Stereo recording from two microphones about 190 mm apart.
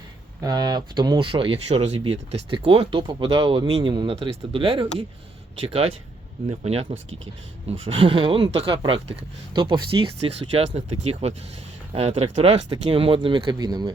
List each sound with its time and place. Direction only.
0.4 s speech: 20° right (ahead or behind)